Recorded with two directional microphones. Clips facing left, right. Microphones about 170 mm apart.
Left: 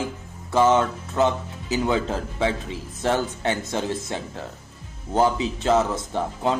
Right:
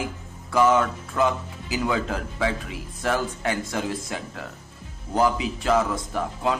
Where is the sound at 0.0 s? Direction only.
25° left (ahead or behind).